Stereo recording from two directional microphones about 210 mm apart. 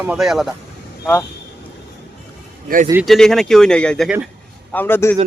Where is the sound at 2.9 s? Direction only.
5° right (ahead or behind).